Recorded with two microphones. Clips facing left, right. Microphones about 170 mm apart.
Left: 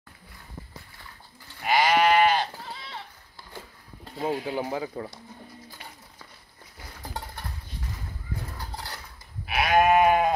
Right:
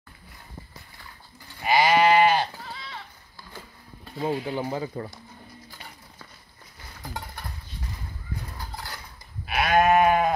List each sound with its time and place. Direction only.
1.6 s sheep: 10° right (ahead or behind)
2.7 s a sound: 25° left (ahead or behind)
4.2 s speech: 10° left (ahead or behind)
9.5 s sheep: 10° left (ahead or behind)